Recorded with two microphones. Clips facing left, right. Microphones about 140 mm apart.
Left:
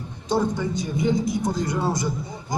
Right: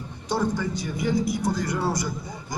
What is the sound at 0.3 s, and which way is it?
A man's voice, 20° left (ahead or behind).